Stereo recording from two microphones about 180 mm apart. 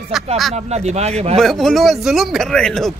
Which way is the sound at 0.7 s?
35° right (ahead or behind).